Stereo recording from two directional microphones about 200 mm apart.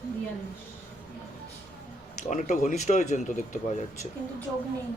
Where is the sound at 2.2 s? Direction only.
40° left (ahead or behind).